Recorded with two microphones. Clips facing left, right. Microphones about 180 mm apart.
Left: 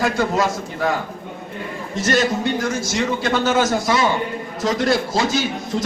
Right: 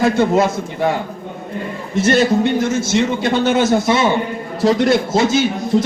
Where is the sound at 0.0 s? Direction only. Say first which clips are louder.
Right 5 dB; 25° right (ahead or behind).